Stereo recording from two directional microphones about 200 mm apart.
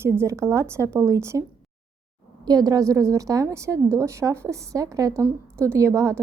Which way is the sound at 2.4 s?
20° right (ahead or behind).